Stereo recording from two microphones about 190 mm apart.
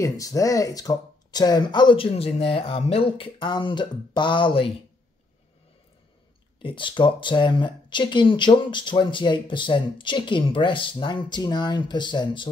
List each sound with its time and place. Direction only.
0.0 s speech: 15° left (ahead or behind)
6.6 s speech: 25° left (ahead or behind)